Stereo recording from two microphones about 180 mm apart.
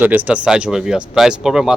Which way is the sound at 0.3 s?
5° right (ahead or behind).